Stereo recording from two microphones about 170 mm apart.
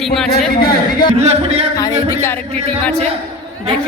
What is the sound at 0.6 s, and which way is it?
Speech, 60° left (ahead or behind).